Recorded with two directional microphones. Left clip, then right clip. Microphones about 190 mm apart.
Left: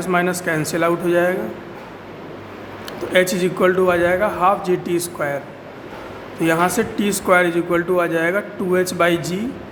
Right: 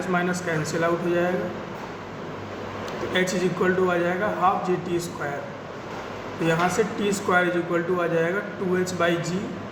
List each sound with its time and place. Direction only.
0.0 s a man's voice: 60° left (ahead or behind)
3.1 s a man's voice: 60° left (ahead or behind)
6.4 s a man's voice: 60° left (ahead or behind)